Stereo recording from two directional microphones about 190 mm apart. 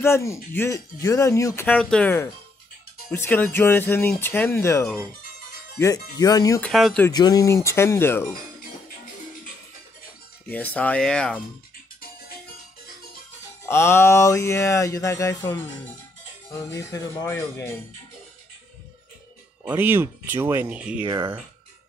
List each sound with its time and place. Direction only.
0.0 s speech: 15° left (ahead or behind)
6.6 s speech: centre (ahead or behind)
7.1 s speech: 20° left (ahead or behind)
10.5 s speech: 10° left (ahead or behind)
13.7 s speech: 15° left (ahead or behind)
19.7 s speech: 10° right (ahead or behind)